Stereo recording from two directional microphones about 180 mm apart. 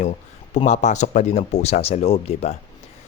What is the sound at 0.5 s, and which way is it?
Speech, 40° left (ahead or behind).